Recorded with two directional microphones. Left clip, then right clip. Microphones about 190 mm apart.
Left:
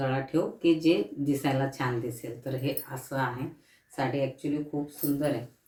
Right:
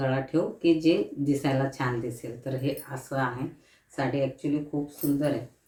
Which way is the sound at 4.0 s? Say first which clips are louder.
Right 1 dB; 10° left (ahead or behind).